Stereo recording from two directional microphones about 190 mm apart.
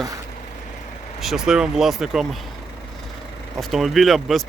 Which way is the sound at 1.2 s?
Centre (ahead or behind).